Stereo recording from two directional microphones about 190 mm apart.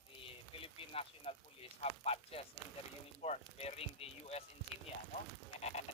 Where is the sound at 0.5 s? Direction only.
30° left (ahead or behind).